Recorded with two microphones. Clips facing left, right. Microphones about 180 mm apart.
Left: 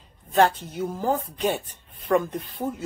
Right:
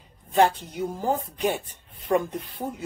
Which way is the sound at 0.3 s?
15° right (ahead or behind).